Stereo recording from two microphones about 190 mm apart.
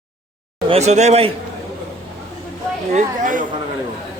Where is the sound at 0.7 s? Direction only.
35° right (ahead or behind).